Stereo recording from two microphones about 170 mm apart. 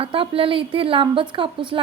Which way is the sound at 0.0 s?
35° right (ahead or behind).